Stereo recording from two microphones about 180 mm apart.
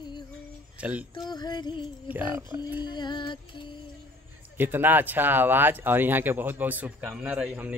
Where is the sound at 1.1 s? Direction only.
25° left (ahead or behind).